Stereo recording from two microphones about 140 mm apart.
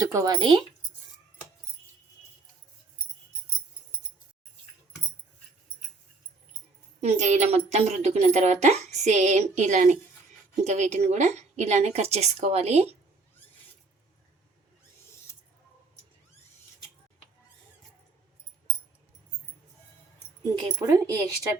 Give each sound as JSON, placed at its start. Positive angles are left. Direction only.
{"t": 0.0, "sound": "speech", "side_deg": -25}
{"t": 0.3, "sound": "speech", "side_deg": -35}
{"t": 7.0, "sound": "a woman's voice", "side_deg": -55}
{"t": 20.4, "sound": "speech", "side_deg": -25}